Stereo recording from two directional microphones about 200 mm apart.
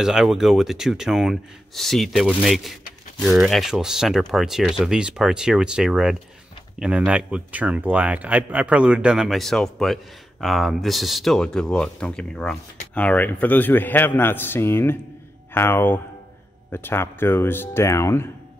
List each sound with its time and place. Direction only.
0.0 s a man's voice: 5° right (ahead or behind); by 18.3 s 15° left (ahead or behind)